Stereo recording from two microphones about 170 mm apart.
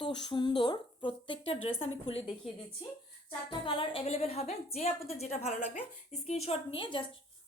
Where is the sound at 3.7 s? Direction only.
30° left (ahead or behind).